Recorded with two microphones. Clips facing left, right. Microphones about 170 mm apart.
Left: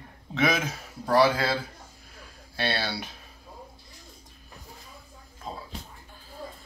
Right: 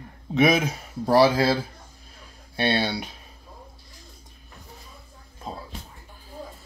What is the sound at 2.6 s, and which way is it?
Speech, 20° right (ahead or behind).